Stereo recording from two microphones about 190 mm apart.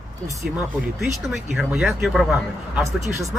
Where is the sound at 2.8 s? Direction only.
15° right (ahead or behind).